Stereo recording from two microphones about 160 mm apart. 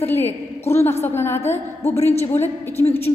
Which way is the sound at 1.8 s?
40° left (ahead or behind).